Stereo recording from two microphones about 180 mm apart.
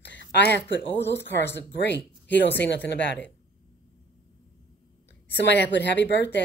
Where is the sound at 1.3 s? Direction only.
80° left.